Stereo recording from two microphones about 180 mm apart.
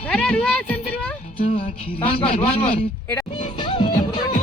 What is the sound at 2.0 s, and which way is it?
Speech, 30° left (ahead or behind).